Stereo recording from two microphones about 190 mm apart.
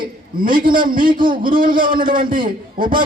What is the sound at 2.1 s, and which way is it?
Speech, 45° right (ahead or behind).